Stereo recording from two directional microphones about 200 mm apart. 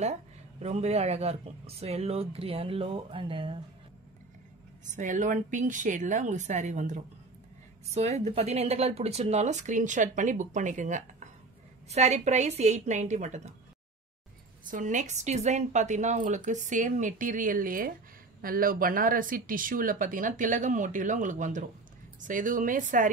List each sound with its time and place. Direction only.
0.0 s speech: 35° right (ahead or behind)
4.9 s speech: 40° right (ahead or behind)
14.7 s speech: 40° right (ahead or behind)